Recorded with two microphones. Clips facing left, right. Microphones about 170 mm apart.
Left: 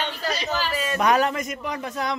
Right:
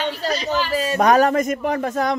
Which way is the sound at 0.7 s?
35° right (ahead or behind).